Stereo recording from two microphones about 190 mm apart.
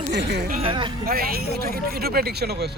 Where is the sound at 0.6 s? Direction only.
25° right (ahead or behind).